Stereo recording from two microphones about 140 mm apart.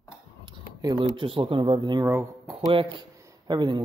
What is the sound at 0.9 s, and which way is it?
Speech, 40° right (ahead or behind).